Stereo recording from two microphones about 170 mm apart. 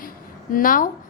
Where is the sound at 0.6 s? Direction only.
55° left (ahead or behind).